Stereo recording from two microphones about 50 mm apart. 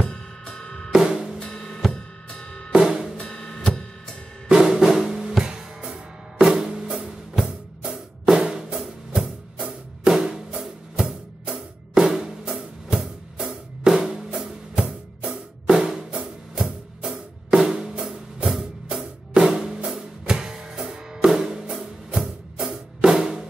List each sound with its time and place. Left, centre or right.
0.0 s drum kit: centre
0.9 s drum: centre
1.4 s drum kit: centre
2.0 s drum: centre
2.7 s drum kit: centre
3.3 s drum kit: centre
4.5 s drum: centre
13.5 s music: centre